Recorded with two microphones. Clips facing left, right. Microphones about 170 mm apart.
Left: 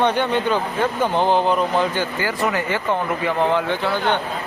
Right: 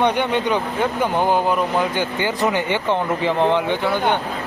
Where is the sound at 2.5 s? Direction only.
20° right (ahead or behind).